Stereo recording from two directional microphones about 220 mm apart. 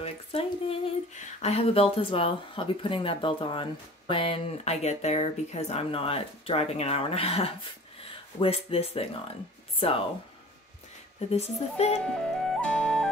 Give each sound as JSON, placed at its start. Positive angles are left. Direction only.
{"t": 0.0, "sound": "speech", "side_deg": 25}
{"t": 11.1, "sound": "speech", "side_deg": 30}
{"t": 12.1, "sound": "flute", "side_deg": 5}